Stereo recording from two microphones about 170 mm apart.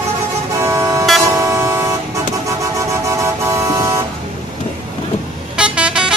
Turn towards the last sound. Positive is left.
turn(degrees=-5)  # may be behind; listen again after turning